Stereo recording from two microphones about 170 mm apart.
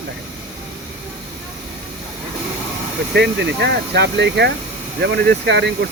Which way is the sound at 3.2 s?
90° right.